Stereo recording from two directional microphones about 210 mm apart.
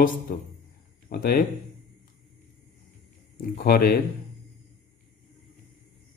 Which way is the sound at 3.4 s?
45° left (ahead or behind).